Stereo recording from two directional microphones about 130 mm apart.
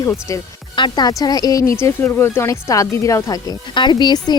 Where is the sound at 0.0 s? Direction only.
25° left (ahead or behind).